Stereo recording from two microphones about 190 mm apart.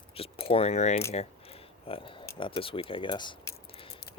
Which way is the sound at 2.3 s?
25° left (ahead or behind).